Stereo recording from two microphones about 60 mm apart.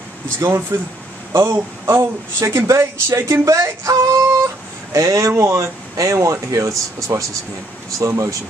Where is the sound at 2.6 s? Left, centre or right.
Right.